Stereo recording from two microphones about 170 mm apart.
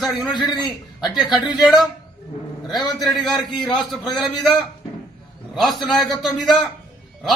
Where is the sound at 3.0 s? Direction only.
Centre (ahead or behind).